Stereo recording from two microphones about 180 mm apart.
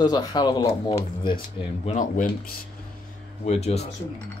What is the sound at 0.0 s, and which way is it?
A man's voice, 25° left (ahead or behind).